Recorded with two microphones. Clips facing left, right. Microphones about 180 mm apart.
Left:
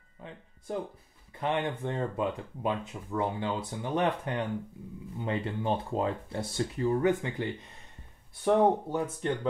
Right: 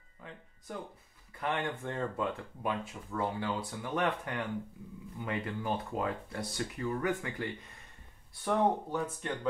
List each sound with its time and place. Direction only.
0.2 s music: 25° left (ahead or behind)
0.7 s speech: 30° left (ahead or behind)
8.5 s speech: 25° left (ahead or behind)